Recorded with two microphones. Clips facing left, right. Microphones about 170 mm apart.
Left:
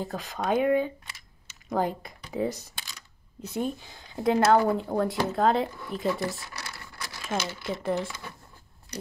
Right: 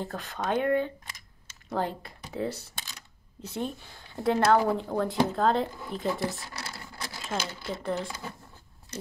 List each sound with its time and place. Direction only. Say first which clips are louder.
0.0 s speech: left 2 dB; 10° left (ahead or behind)
4.9 s speech: left 3 dB; 15° left (ahead or behind)
5.3 s speech: left 2 dB; 5° left (ahead or behind)
6.2 s a sound: even; 25° right (ahead or behind)
7.2 s speech: left 3 dB; 10° left (ahead or behind)